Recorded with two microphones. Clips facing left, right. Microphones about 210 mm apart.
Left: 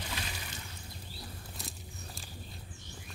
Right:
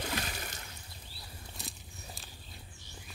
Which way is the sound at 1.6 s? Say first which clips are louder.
Left 2 dB; centre (ahead or behind).